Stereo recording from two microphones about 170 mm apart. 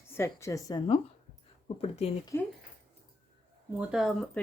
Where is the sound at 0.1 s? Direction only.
15° left (ahead or behind).